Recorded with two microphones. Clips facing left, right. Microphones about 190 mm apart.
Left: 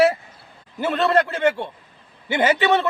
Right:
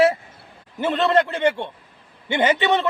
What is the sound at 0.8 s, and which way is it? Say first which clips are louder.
Speech: right 1 dB; 20° right (ahead or behind).